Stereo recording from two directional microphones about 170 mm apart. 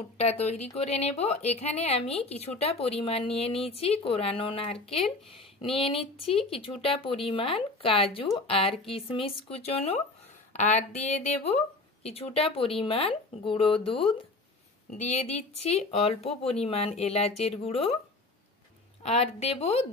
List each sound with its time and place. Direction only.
0.2 s a woman's voice: 40° left (ahead or behind)
15.0 s a woman's voice: 40° left (ahead or behind)
19.0 s a woman's voice: 40° left (ahead or behind)